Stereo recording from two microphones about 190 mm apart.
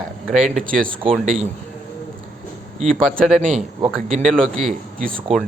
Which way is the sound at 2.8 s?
Centre (ahead or behind).